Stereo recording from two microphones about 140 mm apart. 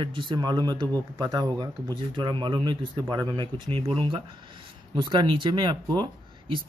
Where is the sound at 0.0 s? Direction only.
35° right (ahead or behind).